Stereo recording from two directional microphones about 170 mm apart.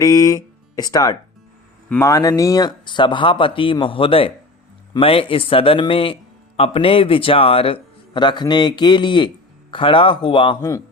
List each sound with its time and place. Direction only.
0.0 s a man's voice: 20° left (ahead or behind)